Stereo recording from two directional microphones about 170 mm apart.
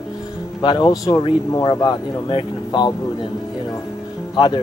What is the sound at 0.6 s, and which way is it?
Speech, 30° left (ahead or behind).